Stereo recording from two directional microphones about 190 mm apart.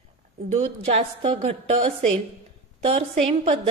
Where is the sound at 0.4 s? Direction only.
35° right (ahead or behind).